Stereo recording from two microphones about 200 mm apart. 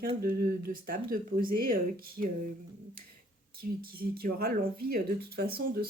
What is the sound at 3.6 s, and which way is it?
Speech, 45° right (ahead or behind).